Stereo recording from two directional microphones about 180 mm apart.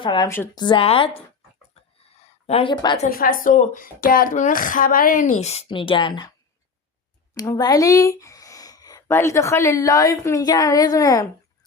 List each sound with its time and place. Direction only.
0.0 s a woman's voice: 25° left (ahead or behind)
0.3 s speech: 15° left (ahead or behind)
0.6 s a woman's voice: 30° left (ahead or behind)
2.2 s speech: 35° left (ahead or behind)
3.1 s speech: 55° left (ahead or behind); by 6.3 s 25° left (ahead or behind)
7.3 s speech: 20° left (ahead or behind)